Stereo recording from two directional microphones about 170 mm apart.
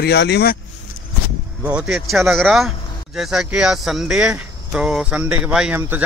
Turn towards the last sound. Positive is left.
turn(degrees=-5)  # may be behind; listen again after turning